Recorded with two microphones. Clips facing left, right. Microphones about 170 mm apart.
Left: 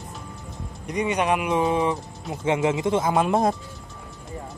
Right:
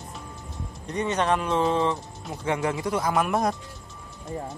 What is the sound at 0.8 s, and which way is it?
Speech, 10° left (ahead or behind).